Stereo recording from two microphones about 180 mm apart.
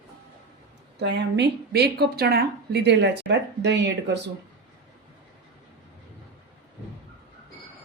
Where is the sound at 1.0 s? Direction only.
65° right (ahead or behind).